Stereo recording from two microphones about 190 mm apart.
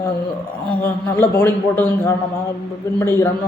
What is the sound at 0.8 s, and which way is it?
A man's voice, 10° left (ahead or behind).